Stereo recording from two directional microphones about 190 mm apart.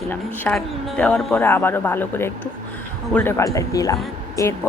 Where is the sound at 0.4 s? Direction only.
5° left (ahead or behind).